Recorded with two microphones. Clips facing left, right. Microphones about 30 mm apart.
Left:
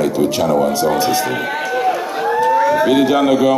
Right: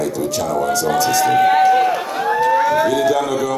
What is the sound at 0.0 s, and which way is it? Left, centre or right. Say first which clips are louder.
A man's voice: left 5 dB; left.